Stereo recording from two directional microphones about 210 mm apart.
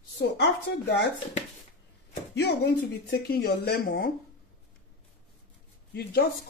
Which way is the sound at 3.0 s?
45° left (ahead or behind).